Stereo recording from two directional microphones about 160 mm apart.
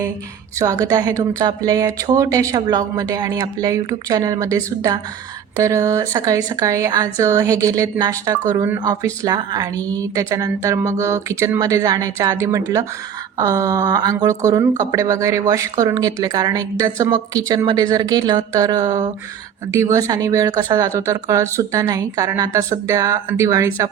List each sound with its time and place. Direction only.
0.6 s speech: 20° right (ahead or behind)